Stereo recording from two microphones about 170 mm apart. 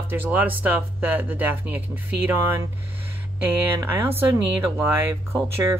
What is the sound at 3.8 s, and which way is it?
Speech, 15° right (ahead or behind).